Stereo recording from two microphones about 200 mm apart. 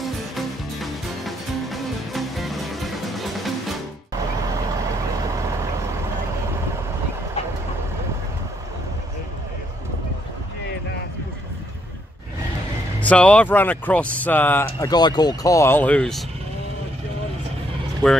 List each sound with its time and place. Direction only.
0.0 s music: centre (ahead or behind)
13.0 s speech: 5° left (ahead or behind)